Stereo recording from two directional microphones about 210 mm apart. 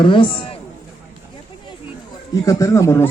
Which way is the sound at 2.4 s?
15° left (ahead or behind).